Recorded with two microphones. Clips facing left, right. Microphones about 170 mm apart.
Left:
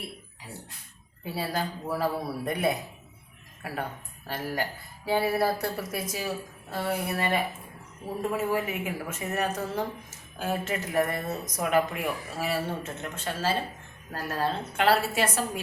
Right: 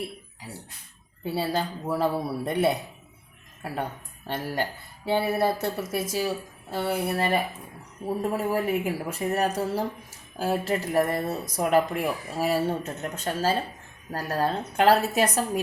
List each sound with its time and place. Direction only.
1.2 s a woman's voice: 25° right (ahead or behind)
4.3 s a woman's voice: 25° right (ahead or behind); by 15.6 s 40° right (ahead or behind)